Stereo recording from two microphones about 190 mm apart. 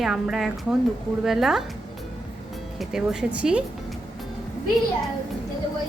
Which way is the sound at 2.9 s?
5° right (ahead or behind).